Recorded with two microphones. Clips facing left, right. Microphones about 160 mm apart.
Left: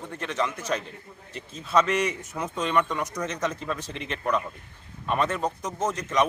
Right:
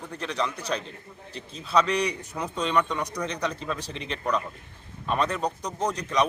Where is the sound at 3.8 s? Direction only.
35° right (ahead or behind).